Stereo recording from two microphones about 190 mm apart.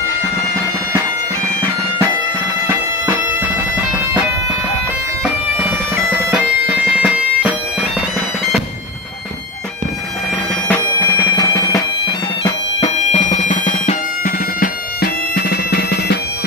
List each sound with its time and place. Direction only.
2.6 s bagpipes: 10° right (ahead or behind)
5.6 s bagpipes: 10° right (ahead or behind)
10.7 s bagpipes: 15° left (ahead or behind)
12.9 s bagpipes: 30° left (ahead or behind)
14.2 s bagpipes: 50° left (ahead or behind)